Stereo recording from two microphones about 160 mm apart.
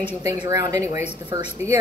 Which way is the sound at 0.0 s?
25° right (ahead or behind).